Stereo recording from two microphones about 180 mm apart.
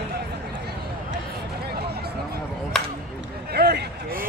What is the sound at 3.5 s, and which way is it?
Speech, 60° right (ahead or behind).